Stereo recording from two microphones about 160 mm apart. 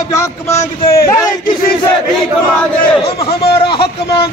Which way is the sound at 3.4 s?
30° left (ahead or behind).